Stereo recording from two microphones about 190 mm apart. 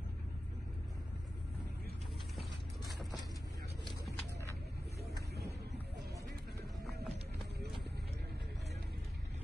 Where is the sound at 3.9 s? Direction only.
15° left (ahead or behind).